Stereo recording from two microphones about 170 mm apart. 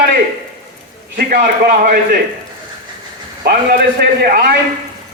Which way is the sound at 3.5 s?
65° right (ahead or behind).